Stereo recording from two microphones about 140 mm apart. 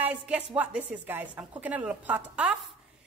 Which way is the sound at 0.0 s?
10° right (ahead or behind).